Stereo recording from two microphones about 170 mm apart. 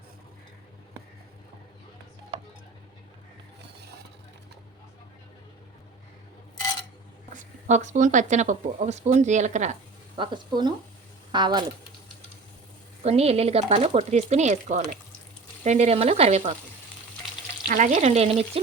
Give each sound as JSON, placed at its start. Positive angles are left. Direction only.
{"t": 7.3, "sound": "speech", "side_deg": -45}
{"t": 10.2, "sound": "speech", "side_deg": -25}
{"t": 13.0, "sound": "speech", "side_deg": -35}
{"t": 17.7, "sound": "speech", "side_deg": -45}